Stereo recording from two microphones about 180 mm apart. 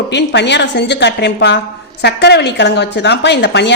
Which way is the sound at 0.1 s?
75° left (ahead or behind).